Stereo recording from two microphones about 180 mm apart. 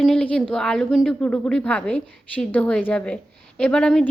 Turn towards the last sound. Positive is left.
turn(degrees=5)  # may be behind; listen again after turning